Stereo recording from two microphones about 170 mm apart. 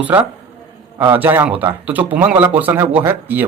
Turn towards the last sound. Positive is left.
turn(degrees=-10)  # may be behind; listen again after turning